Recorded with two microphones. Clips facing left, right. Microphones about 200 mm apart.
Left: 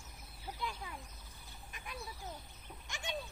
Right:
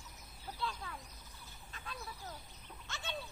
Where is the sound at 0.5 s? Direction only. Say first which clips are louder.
Right 1 dB; 15° left (ahead or behind).